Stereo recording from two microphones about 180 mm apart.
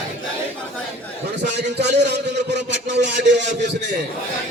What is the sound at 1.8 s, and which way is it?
Speech, 70° right (ahead or behind).